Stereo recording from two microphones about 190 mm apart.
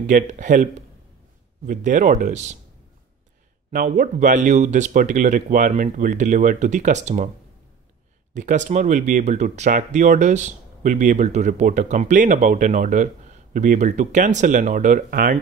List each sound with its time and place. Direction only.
0.0 s speech: 40° right (ahead or behind)
3.7 s speech: 45° right (ahead or behind)
8.4 s speech: 40° right (ahead or behind)